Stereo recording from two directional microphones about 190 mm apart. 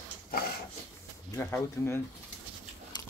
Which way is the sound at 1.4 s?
10° left (ahead or behind).